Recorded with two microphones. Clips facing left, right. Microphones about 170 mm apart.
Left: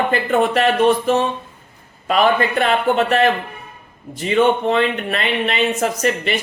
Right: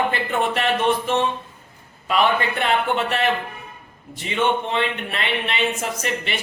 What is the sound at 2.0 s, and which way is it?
Speech, 45° left (ahead or behind).